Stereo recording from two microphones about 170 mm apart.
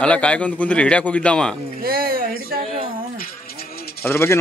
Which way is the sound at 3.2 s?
60° left (ahead or behind).